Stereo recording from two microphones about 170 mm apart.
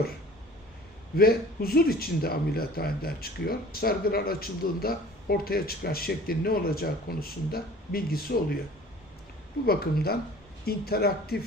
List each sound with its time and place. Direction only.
1.1 s a man's voice: 65° left (ahead or behind)
9.6 s a man's voice: 65° left (ahead or behind)